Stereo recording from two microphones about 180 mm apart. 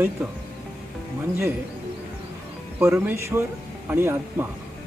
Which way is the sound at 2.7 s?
10° right (ahead or behind).